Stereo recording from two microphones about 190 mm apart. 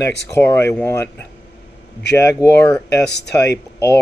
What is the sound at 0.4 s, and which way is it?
Speech, 10° left (ahead or behind).